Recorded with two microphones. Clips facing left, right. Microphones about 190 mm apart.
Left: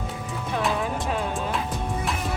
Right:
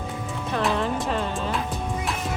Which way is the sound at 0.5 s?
5° left (ahead or behind).